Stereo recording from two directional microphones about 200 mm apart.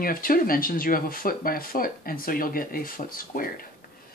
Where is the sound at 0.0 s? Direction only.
45° left (ahead or behind).